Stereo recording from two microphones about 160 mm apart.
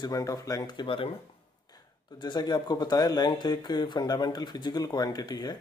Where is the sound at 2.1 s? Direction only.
25° left (ahead or behind).